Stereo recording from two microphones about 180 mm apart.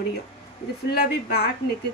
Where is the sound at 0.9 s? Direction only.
60° left (ahead or behind).